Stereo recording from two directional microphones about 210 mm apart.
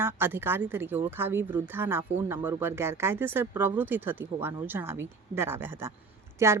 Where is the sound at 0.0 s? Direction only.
10° right (ahead or behind).